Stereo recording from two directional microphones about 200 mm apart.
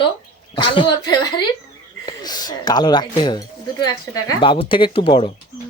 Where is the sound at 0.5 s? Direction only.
25° left (ahead or behind).